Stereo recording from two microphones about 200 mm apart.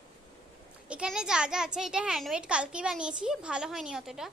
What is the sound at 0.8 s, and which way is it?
A child's voice, 5° right (ahead or behind).